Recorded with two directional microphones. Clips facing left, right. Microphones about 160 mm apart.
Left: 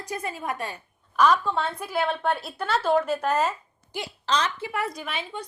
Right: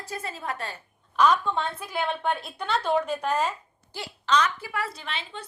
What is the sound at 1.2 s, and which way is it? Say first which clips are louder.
A woman's voice: left 1 dB; 5° left (ahead or behind).